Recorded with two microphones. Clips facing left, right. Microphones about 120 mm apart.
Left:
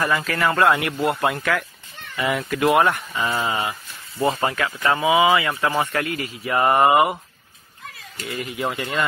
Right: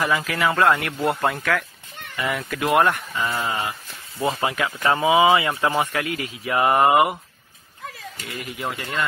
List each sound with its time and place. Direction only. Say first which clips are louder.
0.0 s speech: left 1 dB; 5° right (ahead or behind)
4.2 s speech: left 2 dB; 5° right (ahead or behind)
4.8 s speech: right 1 dB; 25° right (ahead or behind)
5.9 s speech: left 1 dB; centre (ahead or behind)
8.3 s speech: left 4 dB; centre (ahead or behind)